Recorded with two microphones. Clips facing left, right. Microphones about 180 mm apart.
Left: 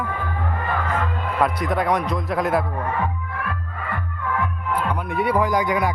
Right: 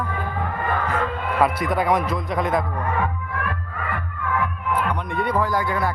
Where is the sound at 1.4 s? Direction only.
5° right (ahead or behind).